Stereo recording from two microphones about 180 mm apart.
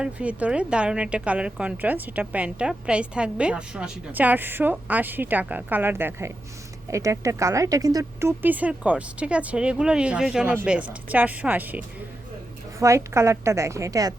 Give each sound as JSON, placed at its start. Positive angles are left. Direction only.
{"t": 0.0, "sound": "a woman's voice", "side_deg": -5}
{"t": 12.8, "sound": "a woman's voice", "side_deg": -15}